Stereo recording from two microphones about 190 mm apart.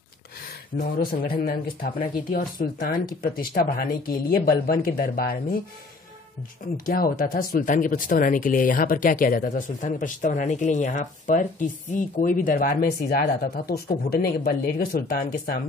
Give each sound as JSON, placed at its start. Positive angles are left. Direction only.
{"t": 0.7, "sound": "speech", "side_deg": 50}
{"t": 6.9, "sound": "speech", "side_deg": 50}